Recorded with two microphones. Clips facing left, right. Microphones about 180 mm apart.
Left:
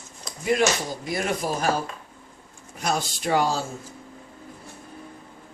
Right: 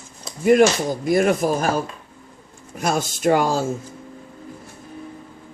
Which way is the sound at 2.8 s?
45° right (ahead or behind).